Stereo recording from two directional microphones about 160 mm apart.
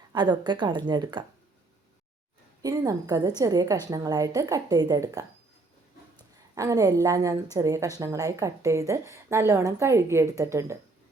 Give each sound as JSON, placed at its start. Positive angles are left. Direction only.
{"t": 0.1, "sound": "a woman's voice", "side_deg": -25}
{"t": 2.6, "sound": "a woman's voice", "side_deg": -20}
{"t": 6.6, "sound": "a woman's voice", "side_deg": -20}